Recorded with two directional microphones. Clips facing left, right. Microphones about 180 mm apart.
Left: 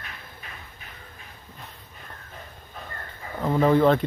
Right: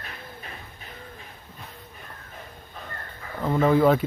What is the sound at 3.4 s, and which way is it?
Speech, centre (ahead or behind).